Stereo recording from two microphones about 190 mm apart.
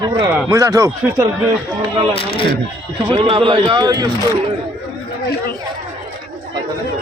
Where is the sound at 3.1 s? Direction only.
25° right (ahead or behind).